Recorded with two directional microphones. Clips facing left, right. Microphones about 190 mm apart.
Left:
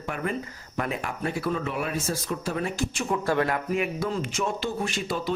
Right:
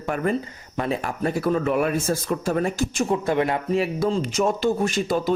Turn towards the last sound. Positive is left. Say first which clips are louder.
# right 6 dB
turn(degrees=-45)  # may be behind; listen again after turning